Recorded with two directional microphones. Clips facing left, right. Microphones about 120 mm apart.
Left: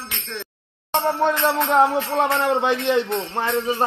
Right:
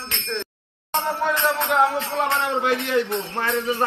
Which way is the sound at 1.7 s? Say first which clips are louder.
Left 3 dB; 25° left (ahead or behind).